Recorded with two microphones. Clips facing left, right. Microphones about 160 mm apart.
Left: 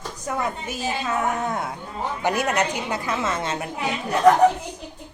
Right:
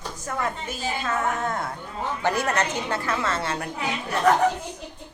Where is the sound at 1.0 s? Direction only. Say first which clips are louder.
Left 1 dB; 15° left (ahead or behind).